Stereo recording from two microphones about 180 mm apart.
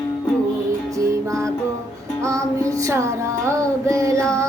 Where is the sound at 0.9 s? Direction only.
15° right (ahead or behind).